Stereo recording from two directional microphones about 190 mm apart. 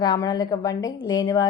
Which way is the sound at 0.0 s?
20° left (ahead or behind).